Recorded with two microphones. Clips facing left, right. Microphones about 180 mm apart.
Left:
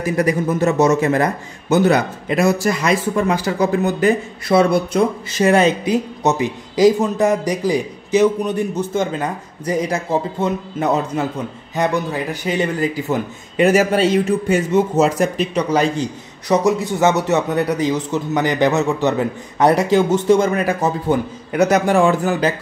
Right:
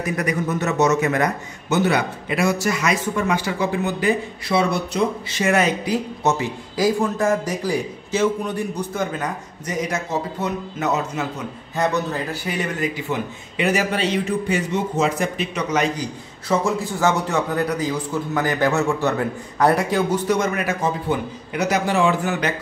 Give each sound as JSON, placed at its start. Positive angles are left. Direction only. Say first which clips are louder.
{"t": 0.0, "sound": "a man's voice", "louder": "left 5 dB", "side_deg": 30}
{"t": 5.4, "sound": "speech", "louder": "left 5 dB", "side_deg": 30}
{"t": 11.7, "sound": "a man's voice", "louder": "left 2 dB", "side_deg": 15}
{"t": 12.4, "sound": "a man's voice", "louder": "left 7 dB", "side_deg": 30}